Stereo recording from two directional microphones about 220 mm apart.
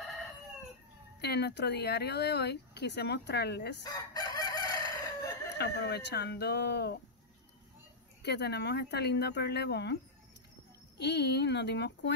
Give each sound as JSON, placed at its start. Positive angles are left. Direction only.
{"t": 1.2, "sound": "speech", "side_deg": 50}
{"t": 3.8, "sound": "crowing", "side_deg": 15}
{"t": 5.6, "sound": "speech", "side_deg": 50}
{"t": 8.2, "sound": "speech", "side_deg": 50}
{"t": 11.0, "sound": "speech", "side_deg": 50}